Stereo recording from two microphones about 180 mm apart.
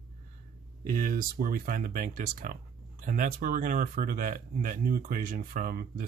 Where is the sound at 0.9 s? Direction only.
50° right (ahead or behind).